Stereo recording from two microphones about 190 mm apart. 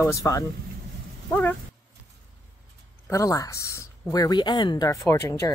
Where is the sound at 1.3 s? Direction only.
10° left (ahead or behind).